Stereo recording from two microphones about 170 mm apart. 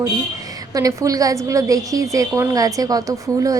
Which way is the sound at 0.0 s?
20° right (ahead or behind).